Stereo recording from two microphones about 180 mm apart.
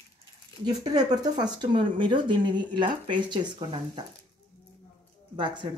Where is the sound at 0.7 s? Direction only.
20° right (ahead or behind).